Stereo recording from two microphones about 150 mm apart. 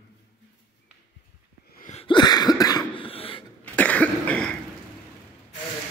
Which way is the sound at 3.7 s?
10° left (ahead or behind).